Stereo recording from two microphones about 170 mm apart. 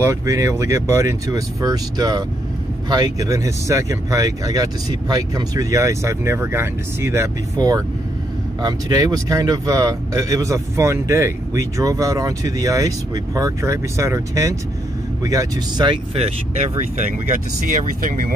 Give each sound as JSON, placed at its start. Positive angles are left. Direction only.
{"t": 0.0, "sound": "speech", "side_deg": -20}
{"t": 17.3, "sound": "speech", "side_deg": -55}